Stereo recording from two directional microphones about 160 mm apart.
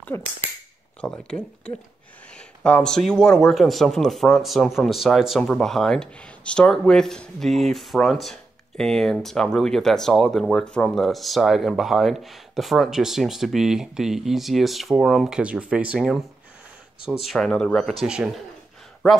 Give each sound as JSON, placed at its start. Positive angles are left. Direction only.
{"t": 0.1, "sound": "speech", "side_deg": 15}
{"t": 1.0, "sound": "speech", "side_deg": 5}